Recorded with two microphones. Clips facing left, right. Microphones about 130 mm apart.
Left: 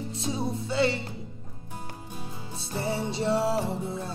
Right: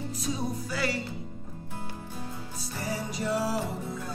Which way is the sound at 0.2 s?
25° left (ahead or behind).